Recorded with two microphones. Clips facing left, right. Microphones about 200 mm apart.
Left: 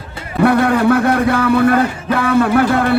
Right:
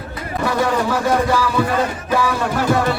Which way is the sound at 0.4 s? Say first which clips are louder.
Left 7 dB; 60° left (ahead or behind).